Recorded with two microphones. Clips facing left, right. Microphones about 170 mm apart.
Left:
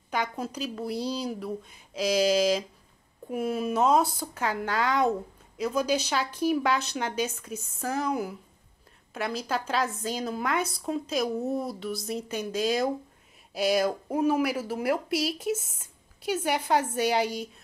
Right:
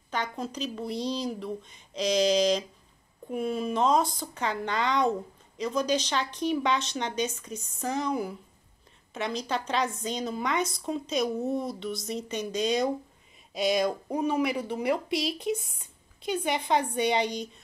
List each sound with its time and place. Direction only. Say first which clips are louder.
0.1 s a woman's voice: left 2 dB; 10° left (ahead or behind)